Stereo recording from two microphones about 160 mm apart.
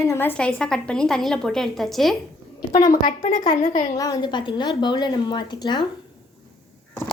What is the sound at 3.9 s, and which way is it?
A woman's voice, 20° left (ahead or behind).